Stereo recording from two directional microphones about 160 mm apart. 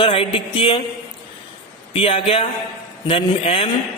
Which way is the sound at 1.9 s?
35° left (ahead or behind).